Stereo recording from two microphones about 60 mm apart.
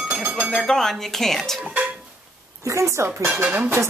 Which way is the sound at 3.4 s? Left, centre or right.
Right.